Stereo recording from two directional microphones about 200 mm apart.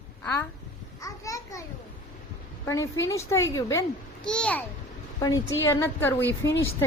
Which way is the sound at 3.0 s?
15° left (ahead or behind).